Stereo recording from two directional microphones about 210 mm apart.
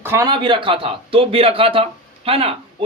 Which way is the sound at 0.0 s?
15° right (ahead or behind).